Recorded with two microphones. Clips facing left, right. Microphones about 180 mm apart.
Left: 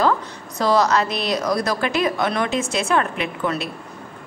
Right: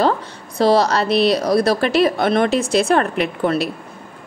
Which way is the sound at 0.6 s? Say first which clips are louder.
Right 3 dB; 30° right (ahead or behind).